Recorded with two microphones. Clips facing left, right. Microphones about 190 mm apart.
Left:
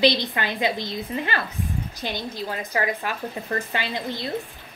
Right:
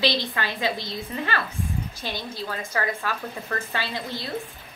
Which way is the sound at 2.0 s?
15° left (ahead or behind).